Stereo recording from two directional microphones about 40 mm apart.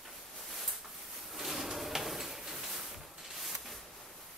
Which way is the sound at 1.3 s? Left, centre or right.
Centre.